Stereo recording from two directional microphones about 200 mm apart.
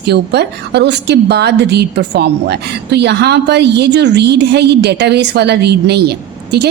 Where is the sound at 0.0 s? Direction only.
55° right (ahead or behind).